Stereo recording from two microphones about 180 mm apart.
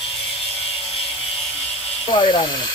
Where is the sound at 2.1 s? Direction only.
25° left (ahead or behind).